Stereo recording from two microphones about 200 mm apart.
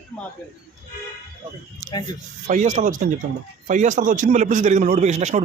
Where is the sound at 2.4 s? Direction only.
35° right (ahead or behind).